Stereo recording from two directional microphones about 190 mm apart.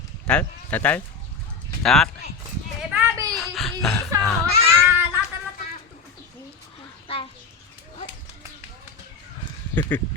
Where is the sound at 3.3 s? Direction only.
Centre (ahead or behind).